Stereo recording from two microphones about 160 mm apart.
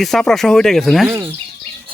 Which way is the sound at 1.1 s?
15° right (ahead or behind).